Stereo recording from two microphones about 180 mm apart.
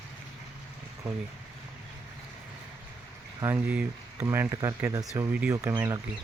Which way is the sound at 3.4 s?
10° right (ahead or behind).